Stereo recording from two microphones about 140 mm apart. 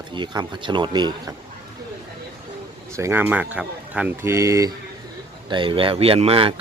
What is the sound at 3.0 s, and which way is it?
Speech, 15° right (ahead or behind).